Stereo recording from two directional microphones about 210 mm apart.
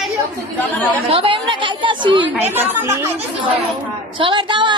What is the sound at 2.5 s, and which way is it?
Speech, 10° right (ahead or behind).